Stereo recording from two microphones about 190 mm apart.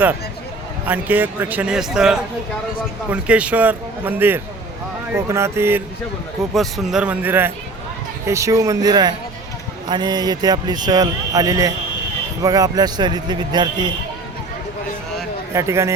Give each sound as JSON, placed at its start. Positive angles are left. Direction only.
{"t": 0.9, "sound": "a man's voice", "side_deg": -10}
{"t": 6.5, "sound": "a man's voice", "side_deg": 0}
{"t": 15.5, "sound": "a man's voice", "side_deg": -15}